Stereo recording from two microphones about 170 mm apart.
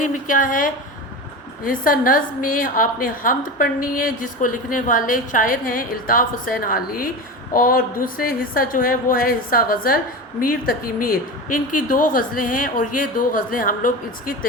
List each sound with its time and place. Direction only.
0.0 s a woman's voice: 50° left (ahead or behind)